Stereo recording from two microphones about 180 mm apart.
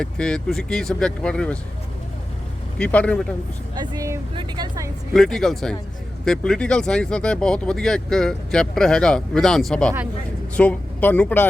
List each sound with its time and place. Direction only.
0.0 s speech: 5° left (ahead or behind)
2.7 s speech: 5° left (ahead or behind)
3.8 s speech: 20° right (ahead or behind)
5.1 s speech: centre (ahead or behind)